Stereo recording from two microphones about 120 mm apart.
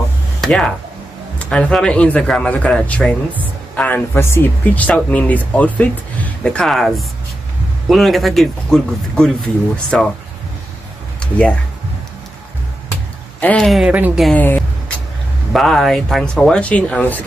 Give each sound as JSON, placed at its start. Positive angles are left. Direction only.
{"t": 0.4, "sound": "speech", "side_deg": 5}
{"t": 11.1, "sound": "a sound", "side_deg": 10}
{"t": 13.4, "sound": "speech", "side_deg": 10}
{"t": 13.7, "sound": "speech", "side_deg": -5}
{"t": 14.3, "sound": "speech", "side_deg": 15}
{"t": 15.5, "sound": "speech", "side_deg": 5}